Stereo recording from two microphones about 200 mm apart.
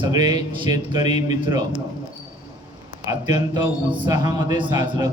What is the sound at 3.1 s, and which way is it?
A man's voice, 15° right (ahead or behind).